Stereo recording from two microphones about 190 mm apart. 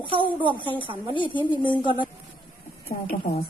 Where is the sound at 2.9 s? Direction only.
45° left (ahead or behind).